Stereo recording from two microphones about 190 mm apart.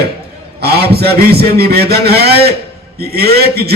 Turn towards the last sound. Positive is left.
turn(degrees=-55)  # may be behind; listen again after turning